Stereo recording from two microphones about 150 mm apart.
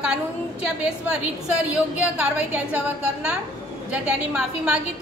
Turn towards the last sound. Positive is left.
turn(degrees=-5)  # may be behind; listen again after turning